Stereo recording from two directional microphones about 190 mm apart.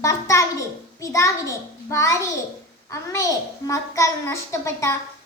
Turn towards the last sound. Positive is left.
turn(degrees=15)  # may be behind; listen again after turning